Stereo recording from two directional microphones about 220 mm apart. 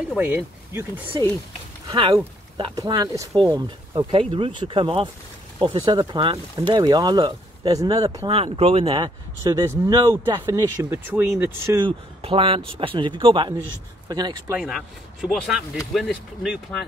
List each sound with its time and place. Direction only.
0.1 s speech: 10° right (ahead or behind)
1.9 s speech: 25° right (ahead or behind)
12.2 s speech: 25° right (ahead or behind)
14.6 s speech: centre (ahead or behind)